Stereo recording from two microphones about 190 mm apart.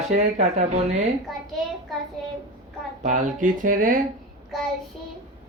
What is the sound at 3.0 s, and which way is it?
Speech, 40° right (ahead or behind).